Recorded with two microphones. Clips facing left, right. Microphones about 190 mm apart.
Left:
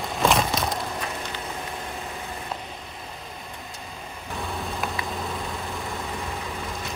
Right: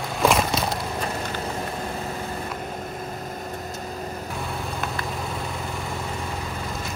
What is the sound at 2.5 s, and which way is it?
Vehicle, 50° right (ahead or behind).